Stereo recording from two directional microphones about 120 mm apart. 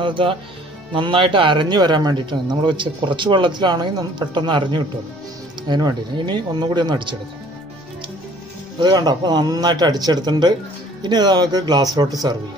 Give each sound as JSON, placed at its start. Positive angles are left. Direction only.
{"t": 0.0, "sound": "a man's voice", "side_deg": -45}
{"t": 8.7, "sound": "a man's voice", "side_deg": -35}